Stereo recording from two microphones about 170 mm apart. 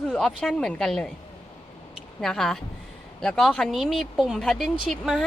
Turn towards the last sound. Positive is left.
turn(degrees=0)  # may be behind; listen again after turning